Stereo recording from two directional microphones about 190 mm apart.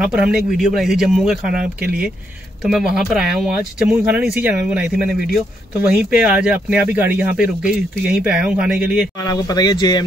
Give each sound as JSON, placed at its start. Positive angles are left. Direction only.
{"t": 0.0, "sound": "speech", "side_deg": -5}
{"t": 9.2, "sound": "speech", "side_deg": 20}